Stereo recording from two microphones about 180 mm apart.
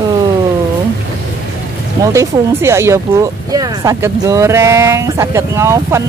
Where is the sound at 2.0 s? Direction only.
15° right (ahead or behind).